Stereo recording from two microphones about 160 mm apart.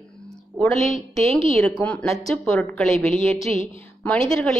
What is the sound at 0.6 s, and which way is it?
A woman's voice, centre (ahead or behind).